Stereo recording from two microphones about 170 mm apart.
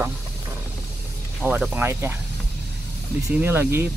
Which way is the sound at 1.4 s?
5° right (ahead or behind).